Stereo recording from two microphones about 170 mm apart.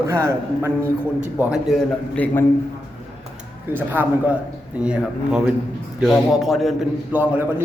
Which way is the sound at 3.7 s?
10° right (ahead or behind).